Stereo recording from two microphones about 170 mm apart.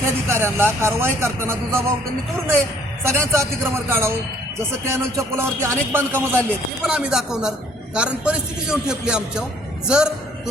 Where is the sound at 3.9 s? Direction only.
15° right (ahead or behind).